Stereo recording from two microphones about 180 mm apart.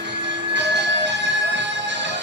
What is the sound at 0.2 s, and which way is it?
Music, 75° right (ahead or behind).